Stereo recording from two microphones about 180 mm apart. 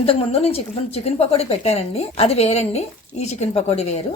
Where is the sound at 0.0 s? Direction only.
30° left (ahead or behind).